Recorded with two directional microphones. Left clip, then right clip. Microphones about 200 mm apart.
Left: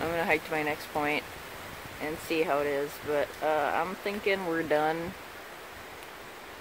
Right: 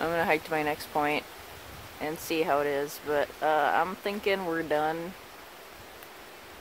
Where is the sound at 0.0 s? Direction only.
20° right (ahead or behind).